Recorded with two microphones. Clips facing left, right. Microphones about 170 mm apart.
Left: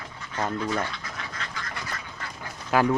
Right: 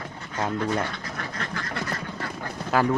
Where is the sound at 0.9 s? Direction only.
50° right (ahead or behind).